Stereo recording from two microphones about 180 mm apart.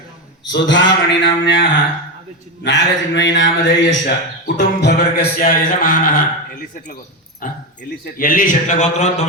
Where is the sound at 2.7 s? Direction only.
80° left.